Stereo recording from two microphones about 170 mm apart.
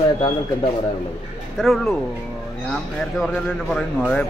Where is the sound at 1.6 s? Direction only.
Centre (ahead or behind).